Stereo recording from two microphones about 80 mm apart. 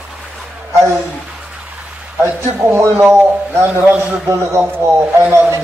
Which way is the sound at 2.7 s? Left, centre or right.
Right.